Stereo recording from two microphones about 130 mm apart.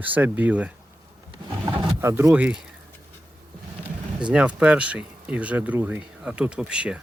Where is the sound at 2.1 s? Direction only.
15° right (ahead or behind).